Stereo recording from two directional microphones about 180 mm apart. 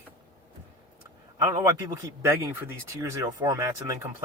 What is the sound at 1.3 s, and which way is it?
Speech, 15° right (ahead or behind).